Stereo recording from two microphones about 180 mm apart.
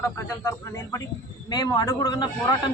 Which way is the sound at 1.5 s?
25° left (ahead or behind).